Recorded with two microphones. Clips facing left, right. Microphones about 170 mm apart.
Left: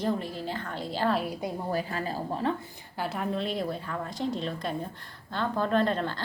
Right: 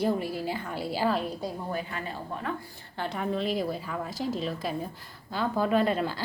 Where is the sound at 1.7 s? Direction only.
35° left (ahead or behind).